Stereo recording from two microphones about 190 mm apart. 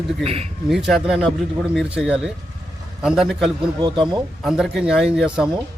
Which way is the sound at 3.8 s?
25° right (ahead or behind).